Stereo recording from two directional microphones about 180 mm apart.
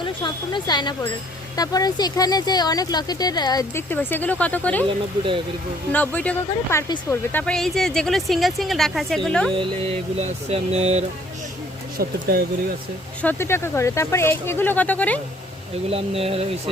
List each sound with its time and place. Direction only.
0.0 s speech: 25° left (ahead or behind); by 4.9 s 10° left (ahead or behind)
5.9 s speech: 10° left (ahead or behind)
9.6 s a sound: 35° right (ahead or behind)
11.9 s speech: 60° right (ahead or behind)
13.2 s speech: 15° left (ahead or behind)
15.9 s a sound: 35° right (ahead or behind)